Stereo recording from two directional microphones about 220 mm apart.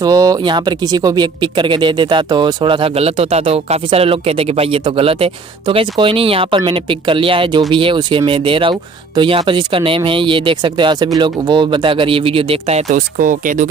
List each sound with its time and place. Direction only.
0.0 s speech: 15° right (ahead or behind); by 13.7 s 35° right (ahead or behind)